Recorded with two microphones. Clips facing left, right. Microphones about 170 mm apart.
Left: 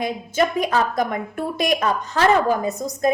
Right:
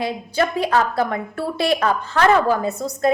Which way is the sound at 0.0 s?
15° left (ahead or behind).